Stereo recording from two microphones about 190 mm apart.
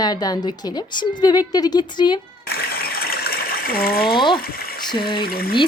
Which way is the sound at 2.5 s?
55° left (ahead or behind).